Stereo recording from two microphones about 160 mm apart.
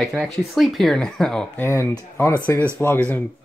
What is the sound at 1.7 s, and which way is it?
Speech, 15° left (ahead or behind).